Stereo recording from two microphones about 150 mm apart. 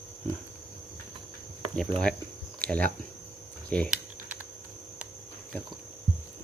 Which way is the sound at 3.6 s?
10° left (ahead or behind).